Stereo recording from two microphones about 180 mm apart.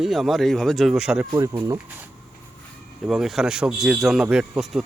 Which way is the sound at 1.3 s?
20° right (ahead or behind).